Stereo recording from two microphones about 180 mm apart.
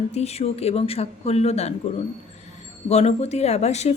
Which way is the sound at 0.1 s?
35° left (ahead or behind).